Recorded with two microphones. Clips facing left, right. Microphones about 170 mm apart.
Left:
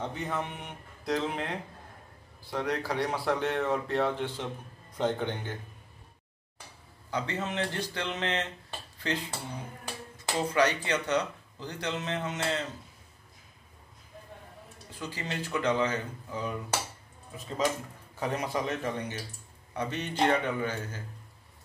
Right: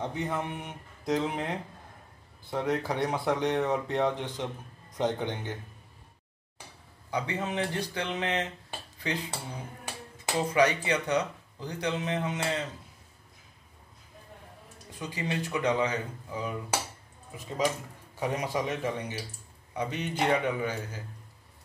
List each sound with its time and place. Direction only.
0.0 s speech: 10° right (ahead or behind)
7.1 s dishes: 10° right (ahead or behind)
10.2 s speech: 10° right (ahead or behind)
15.0 s speech: 15° right (ahead or behind)
18.2 s speech: 10° right (ahead or behind)